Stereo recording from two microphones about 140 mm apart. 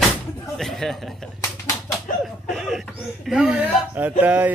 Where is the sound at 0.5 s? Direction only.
Centre (ahead or behind).